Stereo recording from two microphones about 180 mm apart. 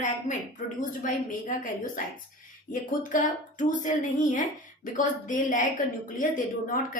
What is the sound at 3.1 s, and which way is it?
Speech, 45° left (ahead or behind).